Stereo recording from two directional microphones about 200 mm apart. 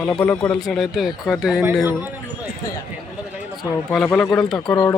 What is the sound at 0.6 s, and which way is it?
Speech, centre (ahead or behind).